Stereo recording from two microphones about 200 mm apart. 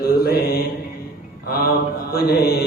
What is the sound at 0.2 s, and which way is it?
Mantra, 50° left (ahead or behind).